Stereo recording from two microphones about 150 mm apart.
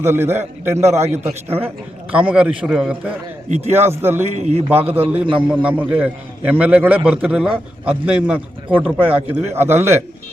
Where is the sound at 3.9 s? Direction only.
15° right (ahead or behind).